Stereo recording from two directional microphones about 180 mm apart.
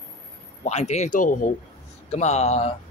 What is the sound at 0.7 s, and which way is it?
Speech, 40° left (ahead or behind).